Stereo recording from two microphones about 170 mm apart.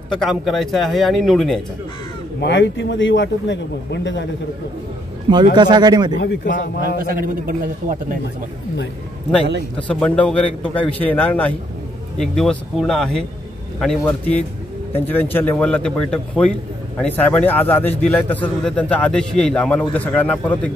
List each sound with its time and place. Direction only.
0.2 s a man's voice: centre (ahead or behind)
2.4 s speech: 90° left
5.3 s speech: 25° right (ahead or behind)
6.1 s a man's voice: 80° left
7.0 s a man's voice: 55° right (ahead or behind)
9.8 s a man's voice: 5° left (ahead or behind)